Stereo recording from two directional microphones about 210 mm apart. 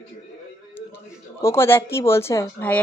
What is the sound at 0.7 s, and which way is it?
Speech, 10° left (ahead or behind).